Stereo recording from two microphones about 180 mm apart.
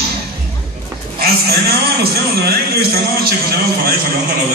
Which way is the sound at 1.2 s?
60° right (ahead or behind).